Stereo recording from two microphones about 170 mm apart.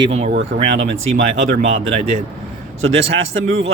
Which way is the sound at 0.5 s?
90° right.